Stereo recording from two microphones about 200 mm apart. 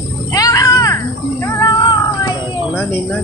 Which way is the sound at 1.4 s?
15° left (ahead or behind).